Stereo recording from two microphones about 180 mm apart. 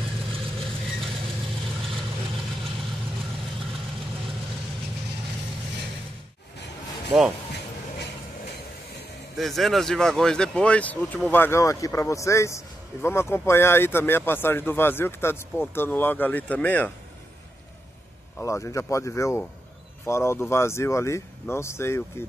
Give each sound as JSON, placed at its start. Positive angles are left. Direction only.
{"t": 7.1, "sound": "speech", "side_deg": 0}
{"t": 9.4, "sound": "speech", "side_deg": 0}
{"t": 18.4, "sound": "speech", "side_deg": 15}